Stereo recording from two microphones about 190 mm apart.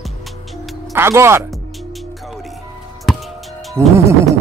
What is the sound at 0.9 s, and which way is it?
Speech, 15° right (ahead or behind).